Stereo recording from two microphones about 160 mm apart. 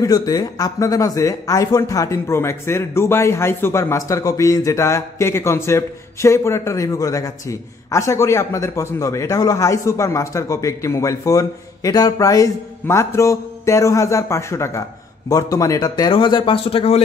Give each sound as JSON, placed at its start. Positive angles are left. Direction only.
{"t": 0.0, "sound": "speech", "side_deg": 25}